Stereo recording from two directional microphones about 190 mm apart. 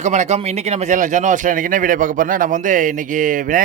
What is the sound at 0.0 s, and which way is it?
Speech, 40° right (ahead or behind).